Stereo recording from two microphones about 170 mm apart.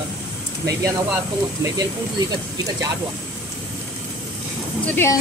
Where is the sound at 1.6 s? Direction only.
20° right (ahead or behind).